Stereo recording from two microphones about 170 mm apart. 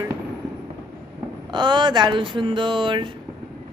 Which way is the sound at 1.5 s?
25° right (ahead or behind).